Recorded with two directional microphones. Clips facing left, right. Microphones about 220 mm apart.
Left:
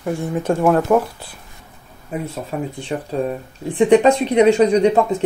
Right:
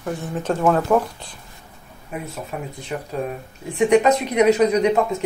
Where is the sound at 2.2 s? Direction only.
30° left (ahead or behind).